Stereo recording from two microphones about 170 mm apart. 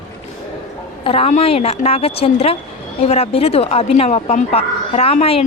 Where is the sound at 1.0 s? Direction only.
35° left (ahead or behind).